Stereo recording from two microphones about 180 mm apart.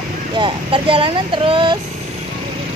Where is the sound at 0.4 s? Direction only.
30° right (ahead or behind).